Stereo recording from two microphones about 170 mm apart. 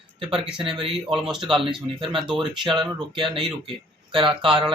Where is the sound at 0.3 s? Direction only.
30° right (ahead or behind).